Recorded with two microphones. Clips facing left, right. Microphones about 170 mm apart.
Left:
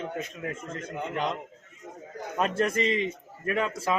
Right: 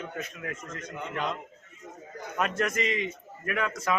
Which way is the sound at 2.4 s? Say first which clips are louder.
Left 3 dB; 30° left (ahead or behind).